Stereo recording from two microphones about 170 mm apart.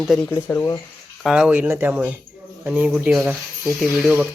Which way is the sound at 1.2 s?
5° right (ahead or behind).